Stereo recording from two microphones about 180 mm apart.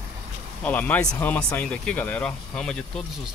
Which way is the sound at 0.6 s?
10° left (ahead or behind).